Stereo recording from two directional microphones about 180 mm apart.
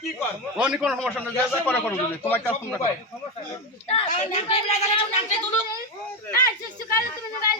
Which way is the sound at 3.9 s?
35° left (ahead or behind).